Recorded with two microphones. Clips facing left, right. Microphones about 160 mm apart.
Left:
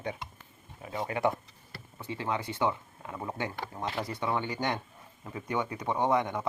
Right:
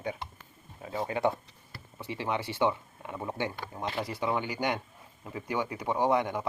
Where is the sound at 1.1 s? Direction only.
20° right (ahead or behind).